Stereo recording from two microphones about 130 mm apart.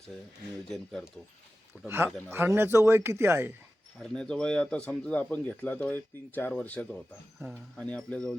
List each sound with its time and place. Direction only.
0.7 s speech: 5° left (ahead or behind)
1.7 s speech: 15° right (ahead or behind)
4.0 s speech: 5° left (ahead or behind)